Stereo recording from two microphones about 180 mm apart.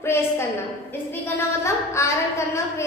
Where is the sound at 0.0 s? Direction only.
15° left (ahead or behind).